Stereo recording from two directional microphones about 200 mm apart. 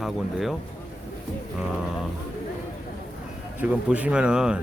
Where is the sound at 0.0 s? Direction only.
Centre (ahead or behind).